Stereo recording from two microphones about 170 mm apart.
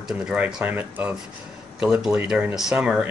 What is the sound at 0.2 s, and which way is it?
Speech, 5° right (ahead or behind).